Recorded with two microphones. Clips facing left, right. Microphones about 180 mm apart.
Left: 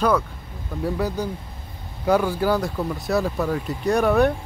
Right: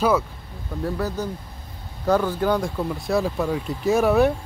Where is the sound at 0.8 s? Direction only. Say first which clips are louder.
Left 2 dB; 10° left (ahead or behind).